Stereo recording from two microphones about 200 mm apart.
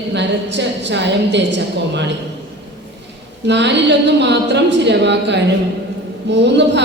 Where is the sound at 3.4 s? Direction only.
60° right (ahead or behind).